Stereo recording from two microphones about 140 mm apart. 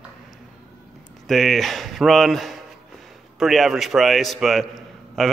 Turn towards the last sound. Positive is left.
turn(degrees=5)  # may be behind; listen again after turning